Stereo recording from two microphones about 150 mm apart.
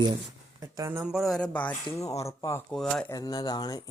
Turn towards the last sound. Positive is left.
turn(degrees=30)  # may be behind; listen again after turning